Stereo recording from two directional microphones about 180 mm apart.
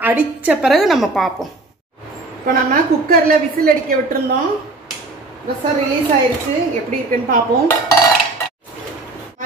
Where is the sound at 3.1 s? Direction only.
55° right (ahead or behind).